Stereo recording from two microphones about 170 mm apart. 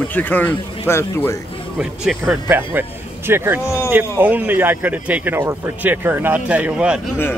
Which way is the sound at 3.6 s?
15° left (ahead or behind).